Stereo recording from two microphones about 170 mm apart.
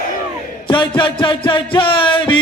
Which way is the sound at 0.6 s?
30° left (ahead or behind).